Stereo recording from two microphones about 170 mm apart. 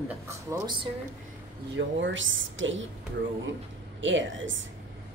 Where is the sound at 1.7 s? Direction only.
90° right.